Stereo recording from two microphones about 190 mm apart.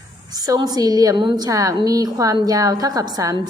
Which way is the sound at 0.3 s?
20° right (ahead or behind).